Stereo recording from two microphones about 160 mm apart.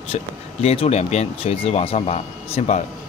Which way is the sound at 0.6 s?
40° left (ahead or behind).